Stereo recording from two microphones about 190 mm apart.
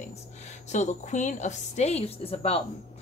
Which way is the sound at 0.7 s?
40° left (ahead or behind).